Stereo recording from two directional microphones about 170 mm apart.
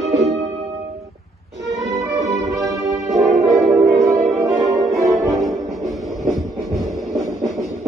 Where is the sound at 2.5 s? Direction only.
Centre (ahead or behind).